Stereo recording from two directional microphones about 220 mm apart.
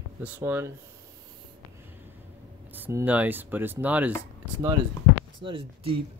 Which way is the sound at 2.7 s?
10° right (ahead or behind).